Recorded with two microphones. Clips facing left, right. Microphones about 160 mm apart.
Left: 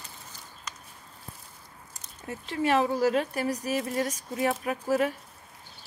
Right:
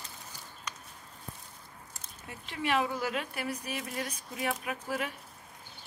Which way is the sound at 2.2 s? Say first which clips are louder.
Left 7 dB; 40° left (ahead or behind).